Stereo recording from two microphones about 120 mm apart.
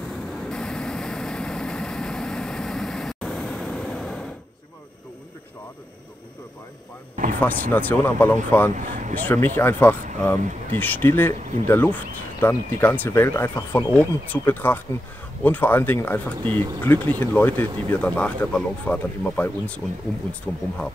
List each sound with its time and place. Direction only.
0.5 s vehicle: 5° left (ahead or behind)
7.3 s speech: 15° left (ahead or behind)